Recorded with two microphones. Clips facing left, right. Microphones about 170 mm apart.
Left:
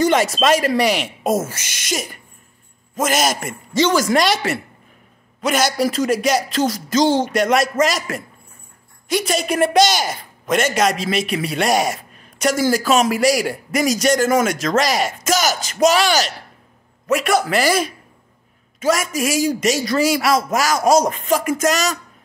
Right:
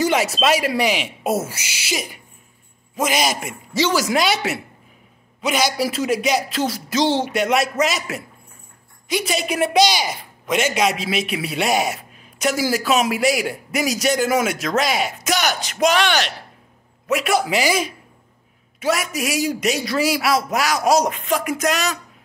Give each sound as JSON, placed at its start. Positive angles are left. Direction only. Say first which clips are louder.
{"t": 0.0, "sound": "speech", "louder": "left 3 dB", "side_deg": -5}
{"t": 3.0, "sound": "speech", "louder": "left 2 dB", "side_deg": 50}
{"t": 3.3, "sound": "a man's voice", "louder": "left 2 dB", "side_deg": -5}
{"t": 5.5, "sound": "speech", "louder": "left 2 dB", "side_deg": 50}
{"t": 5.8, "sound": "a man's voice", "louder": "left 3 dB", "side_deg": -5}
{"t": 7.0, "sound": "speech", "louder": "left 3 dB", "side_deg": 45}
{"t": 7.2, "sound": "a man's voice", "louder": "left 2 dB", "side_deg": -5}
{"t": 9.3, "sound": "speech", "louder": "left 3 dB", "side_deg": 50}
{"t": 10.8, "sound": "a man's voice", "louder": "left 2 dB", "side_deg": -5}
{"t": 18.8, "sound": "a man's voice", "louder": "left 3 dB", "side_deg": 0}